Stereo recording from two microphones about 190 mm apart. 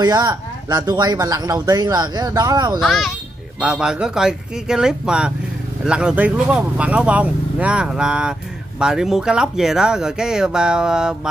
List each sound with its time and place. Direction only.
0.0 s speech: 20° right (ahead or behind)
2.8 s speech: centre (ahead or behind)